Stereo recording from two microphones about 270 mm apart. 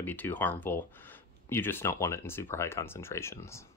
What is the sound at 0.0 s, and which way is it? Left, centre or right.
Speech, centre.